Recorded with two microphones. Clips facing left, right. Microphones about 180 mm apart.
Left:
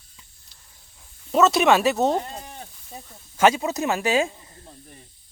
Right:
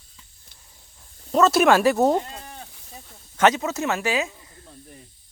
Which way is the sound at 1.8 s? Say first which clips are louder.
Right 2 dB; 20° left (ahead or behind).